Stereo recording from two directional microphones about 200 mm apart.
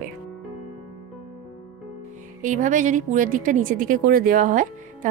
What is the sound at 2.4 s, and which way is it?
Speech, 40° right (ahead or behind).